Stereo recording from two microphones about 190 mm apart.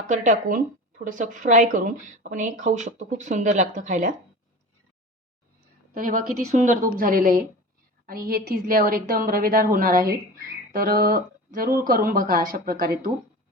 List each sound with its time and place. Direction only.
0.1 s a woman's voice: 40° right (ahead or behind)
5.9 s a woman's voice: 45° right (ahead or behind)